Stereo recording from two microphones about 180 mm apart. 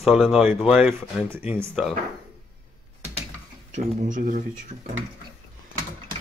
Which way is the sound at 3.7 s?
45° right (ahead or behind).